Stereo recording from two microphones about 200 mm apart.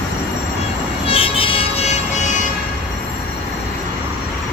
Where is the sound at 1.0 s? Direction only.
30° left (ahead or behind).